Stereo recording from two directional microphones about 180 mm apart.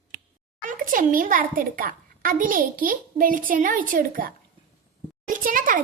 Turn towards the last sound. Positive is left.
turn(degrees=-50)  # may be behind; listen again after turning